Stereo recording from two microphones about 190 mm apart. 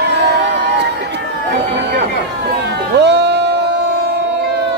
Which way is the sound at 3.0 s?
65° right (ahead or behind).